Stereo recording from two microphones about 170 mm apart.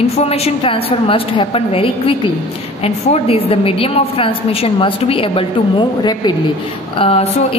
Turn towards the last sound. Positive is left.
turn(degrees=35)  # may be behind; listen again after turning